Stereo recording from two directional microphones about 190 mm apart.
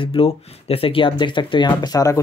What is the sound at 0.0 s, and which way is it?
Speech, 30° left (ahead or behind).